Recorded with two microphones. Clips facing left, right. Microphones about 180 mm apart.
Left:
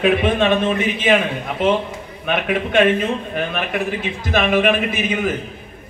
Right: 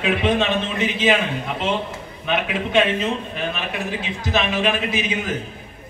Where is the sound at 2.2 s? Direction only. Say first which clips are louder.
Left 3 dB; 55° left (ahead or behind).